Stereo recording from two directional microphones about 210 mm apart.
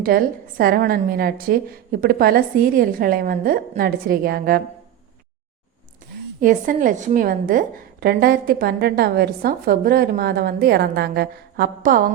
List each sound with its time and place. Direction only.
0.0 s a woman's voice: 45° right (ahead or behind)
6.4 s a woman's voice: 40° right (ahead or behind)